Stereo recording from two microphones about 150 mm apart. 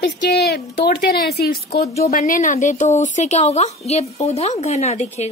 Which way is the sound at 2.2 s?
60° left (ahead or behind).